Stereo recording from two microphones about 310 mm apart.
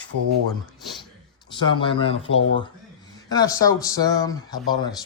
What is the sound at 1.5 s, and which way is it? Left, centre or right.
Speech, centre.